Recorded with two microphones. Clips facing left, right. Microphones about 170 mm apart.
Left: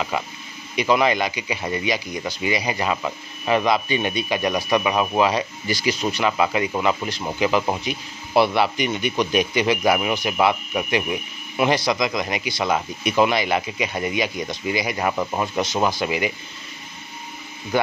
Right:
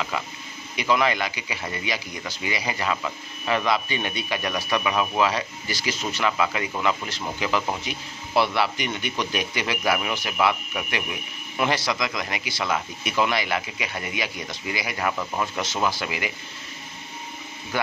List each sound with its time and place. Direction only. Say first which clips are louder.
0.1 s speech: left 4 dB; 20° left (ahead or behind)